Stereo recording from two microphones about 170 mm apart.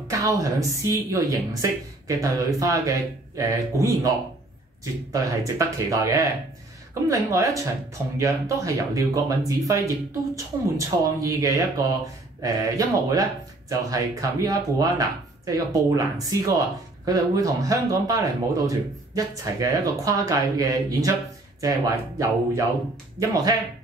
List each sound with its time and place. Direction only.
0.1 s speech: 20° right (ahead or behind)